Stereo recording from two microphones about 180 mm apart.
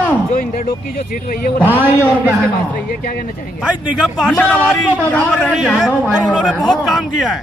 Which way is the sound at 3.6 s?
5° right (ahead or behind).